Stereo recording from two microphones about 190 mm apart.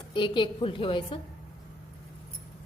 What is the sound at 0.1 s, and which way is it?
A woman's voice, 25° left (ahead or behind).